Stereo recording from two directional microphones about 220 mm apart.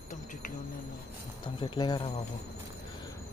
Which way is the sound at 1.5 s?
20° left (ahead or behind).